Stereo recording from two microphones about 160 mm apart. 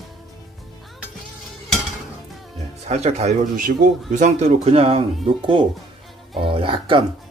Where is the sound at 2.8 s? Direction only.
40° right (ahead or behind).